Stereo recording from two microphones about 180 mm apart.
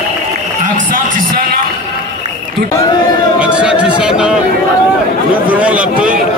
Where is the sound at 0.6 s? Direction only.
50° right (ahead or behind).